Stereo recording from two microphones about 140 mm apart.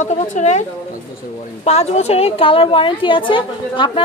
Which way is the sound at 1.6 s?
50° left (ahead or behind).